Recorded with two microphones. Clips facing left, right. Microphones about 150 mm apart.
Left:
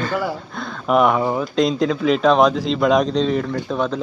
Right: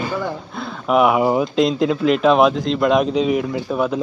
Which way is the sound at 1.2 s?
20° right (ahead or behind).